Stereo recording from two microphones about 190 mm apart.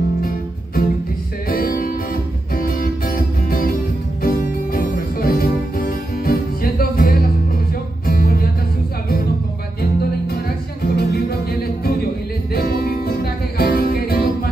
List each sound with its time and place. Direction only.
0.2 s music: 50° left (ahead or behind)
9.8 s music: 55° left (ahead or behind)
12.5 s music: 50° left (ahead or behind)